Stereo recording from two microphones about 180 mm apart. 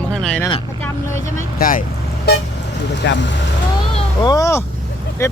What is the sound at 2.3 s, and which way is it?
Speech, 60° left (ahead or behind).